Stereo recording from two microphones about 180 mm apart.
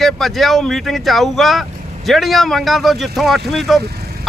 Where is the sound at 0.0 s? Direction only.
Centre (ahead or behind).